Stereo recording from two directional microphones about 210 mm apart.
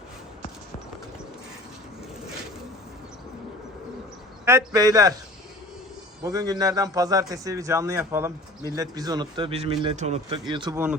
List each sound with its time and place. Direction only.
4.4 s a man's voice: 15° right (ahead or behind)
6.2 s a man's voice: 15° right (ahead or behind)